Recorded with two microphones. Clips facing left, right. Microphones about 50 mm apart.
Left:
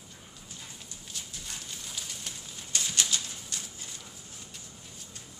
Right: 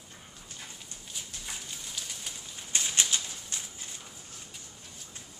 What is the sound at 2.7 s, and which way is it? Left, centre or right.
Bird flight, right.